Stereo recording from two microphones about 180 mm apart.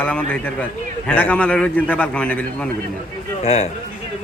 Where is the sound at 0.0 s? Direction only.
5° left (ahead or behind).